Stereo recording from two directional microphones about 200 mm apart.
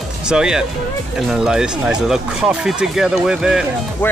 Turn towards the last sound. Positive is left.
turn(degrees=-5)  # may be behind; listen again after turning